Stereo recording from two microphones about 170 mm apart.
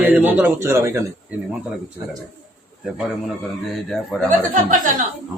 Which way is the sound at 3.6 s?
Centre (ahead or behind).